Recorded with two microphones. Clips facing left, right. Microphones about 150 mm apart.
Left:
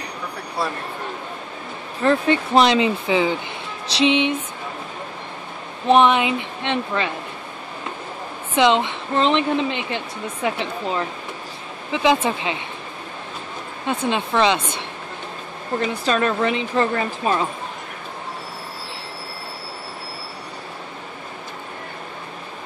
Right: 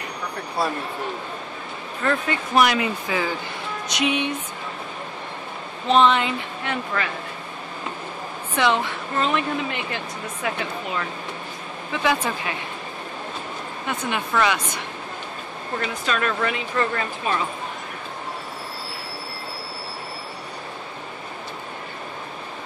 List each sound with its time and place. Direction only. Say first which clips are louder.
2.0 s speech: left 6 dB; 25° left (ahead or behind)
5.9 s speech: left 3 dB; 15° left (ahead or behind)
8.5 s speech: left 4 dB; 20° left (ahead or behind)
13.8 s speech: left 5 dB; 25° left (ahead or behind)
15.9 s speech: left 4 dB; 30° left (ahead or behind)